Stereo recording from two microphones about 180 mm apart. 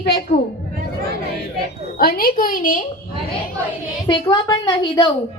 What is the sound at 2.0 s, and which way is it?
Speech, 55° left (ahead or behind).